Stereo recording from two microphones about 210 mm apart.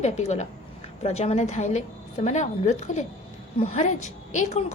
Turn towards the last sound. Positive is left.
turn(degrees=35)  # may be behind; listen again after turning